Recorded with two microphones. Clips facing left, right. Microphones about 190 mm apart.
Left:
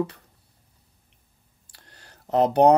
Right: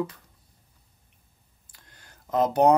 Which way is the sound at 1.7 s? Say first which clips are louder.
Left 3 dB; 70° left (ahead or behind).